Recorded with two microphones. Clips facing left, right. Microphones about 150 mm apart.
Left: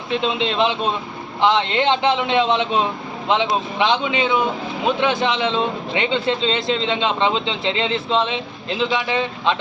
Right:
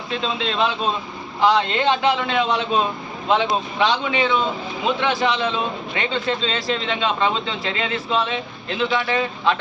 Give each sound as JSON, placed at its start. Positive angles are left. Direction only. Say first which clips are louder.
{"t": 0.3, "sound": "speech", "louder": "left 2 dB", "side_deg": 20}